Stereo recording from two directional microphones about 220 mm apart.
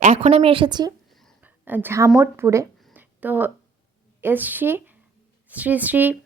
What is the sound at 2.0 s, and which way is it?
Speech, 10° right (ahead or behind).